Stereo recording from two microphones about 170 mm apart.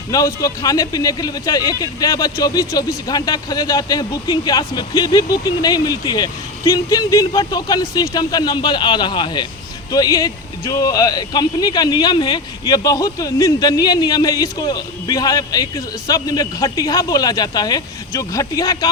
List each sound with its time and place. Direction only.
0.1 s speech: 20° left (ahead or behind)